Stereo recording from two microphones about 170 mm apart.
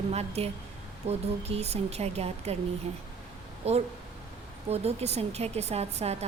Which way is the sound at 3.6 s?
40° right (ahead or behind).